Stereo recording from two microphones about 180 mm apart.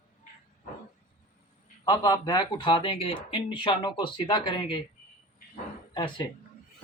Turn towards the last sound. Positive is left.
turn(degrees=25)  # may be behind; listen again after turning